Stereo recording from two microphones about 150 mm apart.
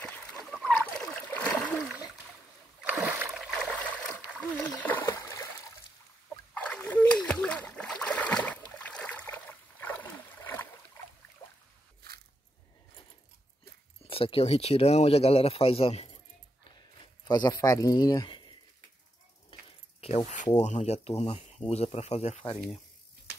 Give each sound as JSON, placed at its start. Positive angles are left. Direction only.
{"t": 0.0, "sound": "splash", "side_deg": 5}
{"t": 2.8, "sound": "rowboat", "side_deg": -10}
{"t": 3.3, "sound": "trickle", "side_deg": 0}
{"t": 4.6, "sound": "splash", "side_deg": 10}
{"t": 6.5, "sound": "splash", "side_deg": 5}
{"t": 11.4, "sound": "boat", "side_deg": 20}
{"t": 14.0, "sound": "speech", "side_deg": 40}
{"t": 17.2, "sound": "speech", "side_deg": 30}
{"t": 20.0, "sound": "speech", "side_deg": 40}